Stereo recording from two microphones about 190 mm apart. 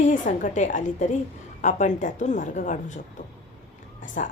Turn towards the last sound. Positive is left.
turn(degrees=40)  # may be behind; listen again after turning